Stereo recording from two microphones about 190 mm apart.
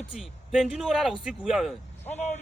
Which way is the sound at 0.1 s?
Centre (ahead or behind).